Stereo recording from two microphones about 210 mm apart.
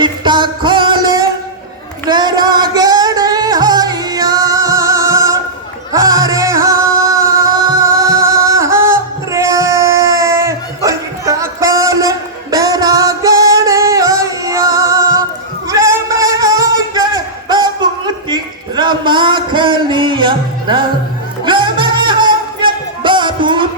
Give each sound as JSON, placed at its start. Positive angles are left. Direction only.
{"t": 0.0, "sound": "music", "side_deg": -20}